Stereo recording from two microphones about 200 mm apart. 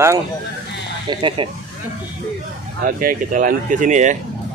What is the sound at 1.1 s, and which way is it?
Speech, 25° right (ahead or behind).